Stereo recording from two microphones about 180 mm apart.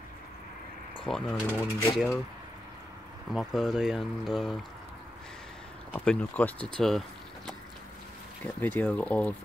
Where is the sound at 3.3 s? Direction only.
Centre (ahead or behind).